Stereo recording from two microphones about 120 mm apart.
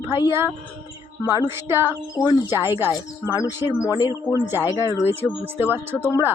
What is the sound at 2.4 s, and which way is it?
Speech, 20° right (ahead or behind).